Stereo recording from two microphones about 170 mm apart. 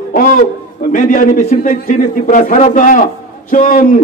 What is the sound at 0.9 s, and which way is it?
A man's voice, 50° left (ahead or behind).